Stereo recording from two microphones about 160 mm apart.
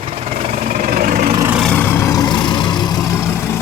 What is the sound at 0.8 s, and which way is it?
Vehicle, 55° right (ahead or behind).